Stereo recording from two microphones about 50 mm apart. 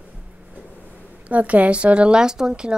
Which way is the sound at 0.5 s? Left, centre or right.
Right.